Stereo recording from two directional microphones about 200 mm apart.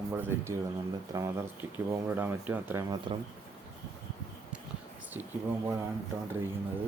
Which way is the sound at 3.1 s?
25° right (ahead or behind).